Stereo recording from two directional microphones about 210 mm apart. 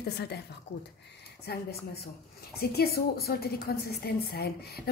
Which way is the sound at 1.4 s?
50° left (ahead or behind).